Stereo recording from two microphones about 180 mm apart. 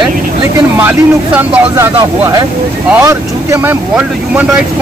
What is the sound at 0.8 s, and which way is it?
Speech, 10° right (ahead or behind).